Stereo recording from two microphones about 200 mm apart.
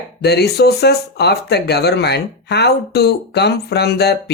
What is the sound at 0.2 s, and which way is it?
Speech, 55° left (ahead or behind).